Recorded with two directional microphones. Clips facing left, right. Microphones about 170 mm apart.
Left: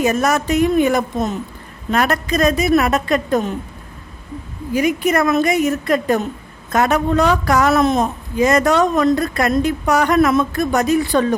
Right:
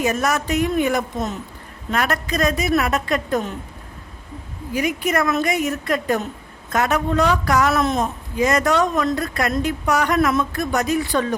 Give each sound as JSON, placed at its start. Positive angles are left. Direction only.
{"t": 0.0, "sound": "a woman's voice", "side_deg": 25}
{"t": 4.7, "sound": "a woman's voice", "side_deg": 25}